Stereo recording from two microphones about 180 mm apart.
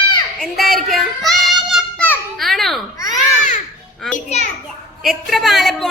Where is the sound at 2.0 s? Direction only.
Centre (ahead or behind).